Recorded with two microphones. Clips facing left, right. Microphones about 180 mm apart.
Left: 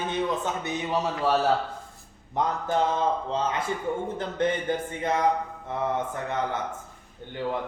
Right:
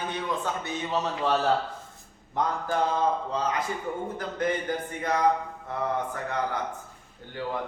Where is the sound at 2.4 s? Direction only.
20° left (ahead or behind).